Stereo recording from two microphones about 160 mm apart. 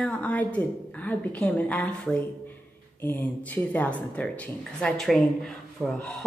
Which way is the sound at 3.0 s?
10° left (ahead or behind).